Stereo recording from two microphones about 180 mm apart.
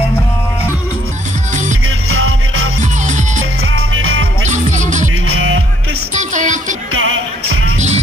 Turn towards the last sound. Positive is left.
turn(degrees=-90)